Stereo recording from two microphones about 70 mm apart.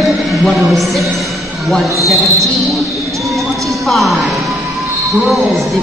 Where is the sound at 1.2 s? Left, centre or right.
Centre.